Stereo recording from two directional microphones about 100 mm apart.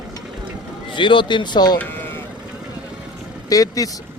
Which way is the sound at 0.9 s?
55° left (ahead or behind).